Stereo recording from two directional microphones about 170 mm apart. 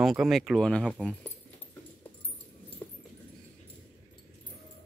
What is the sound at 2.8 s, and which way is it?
Dog, 20° left (ahead or behind).